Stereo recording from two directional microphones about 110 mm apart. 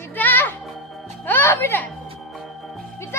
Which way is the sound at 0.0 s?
15° left (ahead or behind).